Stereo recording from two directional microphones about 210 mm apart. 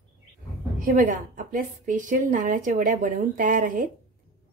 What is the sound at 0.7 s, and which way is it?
A woman's voice, 40° right (ahead or behind).